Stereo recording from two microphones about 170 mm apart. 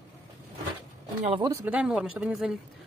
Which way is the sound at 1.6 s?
5° right (ahead or behind).